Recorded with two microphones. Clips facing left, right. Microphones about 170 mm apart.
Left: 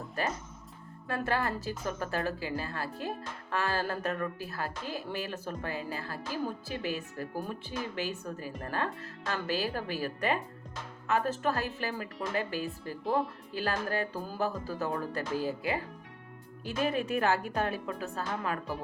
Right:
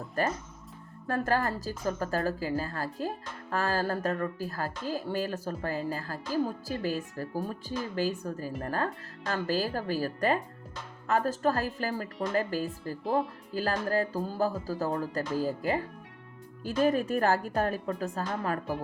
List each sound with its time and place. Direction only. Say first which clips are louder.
1.0 s speech: right 3 dB; 40° right (ahead or behind)
16.8 s speech: right 3 dB; 40° right (ahead or behind)